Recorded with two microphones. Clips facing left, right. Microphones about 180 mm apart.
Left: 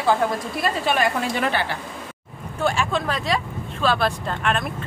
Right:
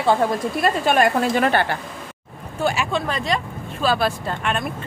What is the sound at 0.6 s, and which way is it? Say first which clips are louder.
A woman's voice: right 4 dB; 50° right (ahead or behind).